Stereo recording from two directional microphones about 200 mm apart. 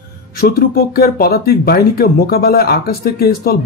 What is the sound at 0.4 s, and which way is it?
Speech, 50° left (ahead or behind).